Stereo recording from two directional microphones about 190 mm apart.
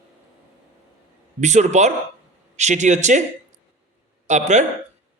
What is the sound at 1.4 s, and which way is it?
A man's voice, 40° right (ahead or behind).